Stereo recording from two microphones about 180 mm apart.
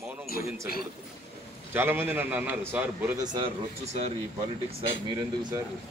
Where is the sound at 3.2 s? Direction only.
25° right (ahead or behind).